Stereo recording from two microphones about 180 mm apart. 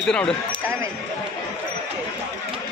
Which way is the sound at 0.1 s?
5° left (ahead or behind).